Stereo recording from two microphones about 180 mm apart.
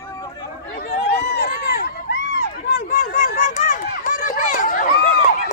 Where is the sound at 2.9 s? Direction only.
60° left (ahead or behind).